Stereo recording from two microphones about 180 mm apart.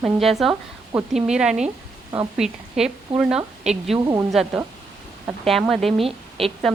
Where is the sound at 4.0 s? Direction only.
20° right (ahead or behind).